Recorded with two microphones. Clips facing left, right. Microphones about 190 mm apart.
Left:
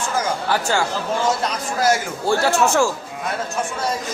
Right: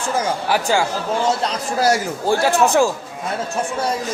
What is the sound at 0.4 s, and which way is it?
Speech, 15° right (ahead or behind).